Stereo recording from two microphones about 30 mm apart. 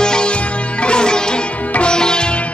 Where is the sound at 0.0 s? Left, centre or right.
Left.